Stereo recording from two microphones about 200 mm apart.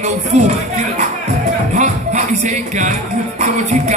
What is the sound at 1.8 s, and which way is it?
Music, 35° right (ahead or behind).